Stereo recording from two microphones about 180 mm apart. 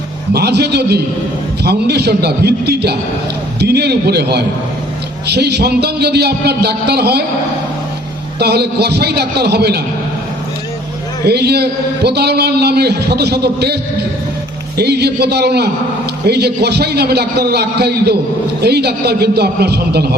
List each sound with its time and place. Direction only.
0.3 s a man's voice: 65° right (ahead or behind)
8.4 s a man's voice: 65° right (ahead or behind)
11.3 s a man's voice: 65° right (ahead or behind)
14.8 s a man's voice: 65° right (ahead or behind)